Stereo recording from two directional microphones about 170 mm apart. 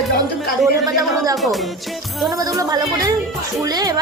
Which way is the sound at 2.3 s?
20° right (ahead or behind).